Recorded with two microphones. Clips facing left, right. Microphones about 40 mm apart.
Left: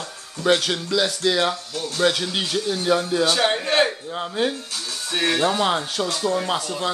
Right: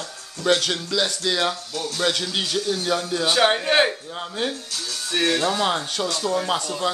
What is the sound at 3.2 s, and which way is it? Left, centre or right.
Speech, centre.